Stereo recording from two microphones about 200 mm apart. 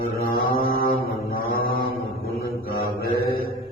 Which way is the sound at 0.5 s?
45° left (ahead or behind).